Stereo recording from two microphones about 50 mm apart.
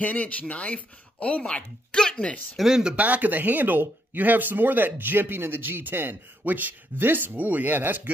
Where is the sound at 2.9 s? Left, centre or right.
Right.